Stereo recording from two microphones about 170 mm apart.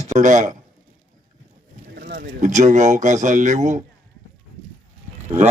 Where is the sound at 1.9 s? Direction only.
55° right (ahead or behind).